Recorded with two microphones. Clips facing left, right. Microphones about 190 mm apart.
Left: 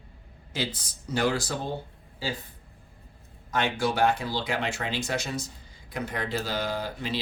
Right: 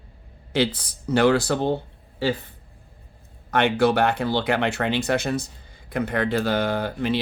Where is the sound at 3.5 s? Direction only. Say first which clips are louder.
Right 8 dB; 65° right (ahead or behind).